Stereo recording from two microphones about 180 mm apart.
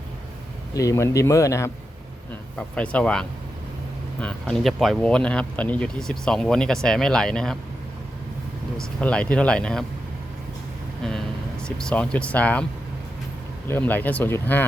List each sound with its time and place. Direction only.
0.7 s speech: 20° left (ahead or behind)
8.8 s speech: 5° left (ahead or behind)
11.0 s a sound: centre (ahead or behind)
11.6 s speech: 5° left (ahead or behind)
13.7 s speech: 10° left (ahead or behind)